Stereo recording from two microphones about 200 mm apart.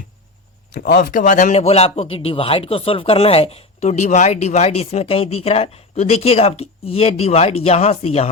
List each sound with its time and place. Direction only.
1.1 s speech: 40° left (ahead or behind)